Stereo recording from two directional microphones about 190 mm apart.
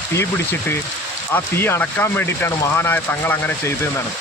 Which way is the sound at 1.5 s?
10° left (ahead or behind).